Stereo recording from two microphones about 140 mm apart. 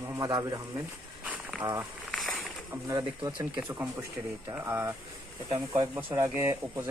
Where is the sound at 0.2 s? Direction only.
30° right (ahead or behind).